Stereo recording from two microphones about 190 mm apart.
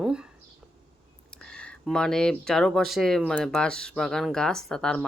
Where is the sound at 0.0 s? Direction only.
5° right (ahead or behind).